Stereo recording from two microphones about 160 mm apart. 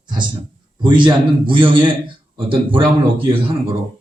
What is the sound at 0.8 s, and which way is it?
A man's voice, 30° right (ahead or behind).